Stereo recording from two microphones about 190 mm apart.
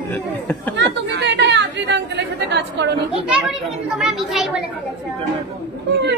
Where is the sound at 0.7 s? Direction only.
70° right (ahead or behind).